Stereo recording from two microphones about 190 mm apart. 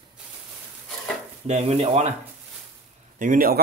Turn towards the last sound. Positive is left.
turn(degrees=-45)  # may be behind; listen again after turning